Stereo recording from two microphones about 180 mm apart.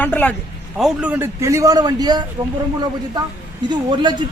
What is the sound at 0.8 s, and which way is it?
A man's voice, 10° right (ahead or behind).